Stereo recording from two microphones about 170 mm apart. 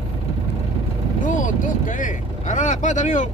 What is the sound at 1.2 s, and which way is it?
Vehicle, 50° left (ahead or behind).